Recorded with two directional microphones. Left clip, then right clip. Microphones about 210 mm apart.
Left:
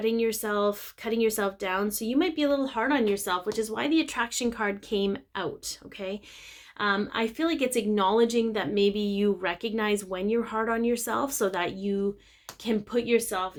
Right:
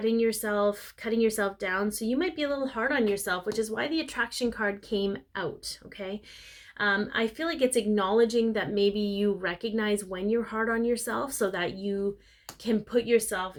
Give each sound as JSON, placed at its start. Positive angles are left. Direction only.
{"t": 0.0, "sound": "a woman's voice", "side_deg": 30}